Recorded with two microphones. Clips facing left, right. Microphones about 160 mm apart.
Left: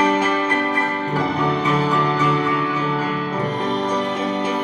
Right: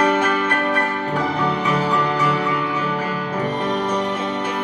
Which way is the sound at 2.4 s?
20° right (ahead or behind).